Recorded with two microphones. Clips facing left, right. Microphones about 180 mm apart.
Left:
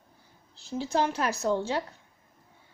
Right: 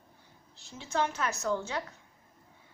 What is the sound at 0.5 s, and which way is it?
A woman's voice, 35° left (ahead or behind).